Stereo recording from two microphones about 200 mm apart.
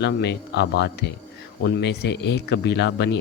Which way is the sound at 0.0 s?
55° left (ahead or behind).